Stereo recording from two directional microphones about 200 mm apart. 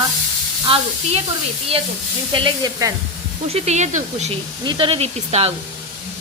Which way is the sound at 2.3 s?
25° right (ahead or behind).